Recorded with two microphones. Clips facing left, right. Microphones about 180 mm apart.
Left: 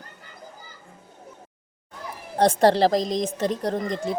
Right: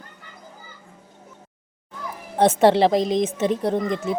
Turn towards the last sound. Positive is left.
turn(degrees=35)  # may be behind; listen again after turning